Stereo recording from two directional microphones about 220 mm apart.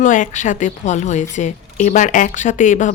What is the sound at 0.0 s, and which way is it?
A woman's voice, 35° left (ahead or behind).